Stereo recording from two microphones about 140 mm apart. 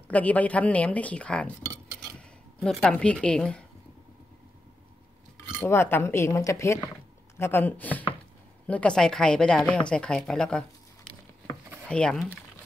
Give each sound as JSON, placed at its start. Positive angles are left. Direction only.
{"t": 0.1, "sound": "a woman's voice", "side_deg": 10}
{"t": 2.0, "sound": "a sound", "side_deg": 5}
{"t": 5.6, "sound": "a woman's voice", "side_deg": 15}
{"t": 11.9, "sound": "speech", "side_deg": 5}